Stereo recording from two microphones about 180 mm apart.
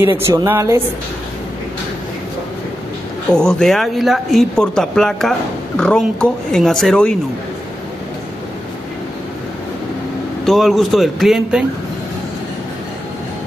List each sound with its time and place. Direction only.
0.3 s speech: 15° right (ahead or behind)
3.3 s speech: 5° left (ahead or behind)
10.4 s speech: centre (ahead or behind)